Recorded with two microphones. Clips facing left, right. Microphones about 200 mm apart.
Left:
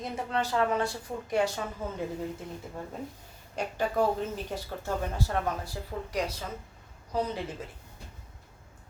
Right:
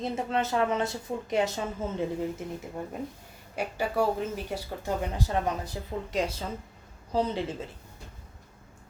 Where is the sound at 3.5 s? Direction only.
10° right (ahead or behind); by 7.7 s 25° right (ahead or behind).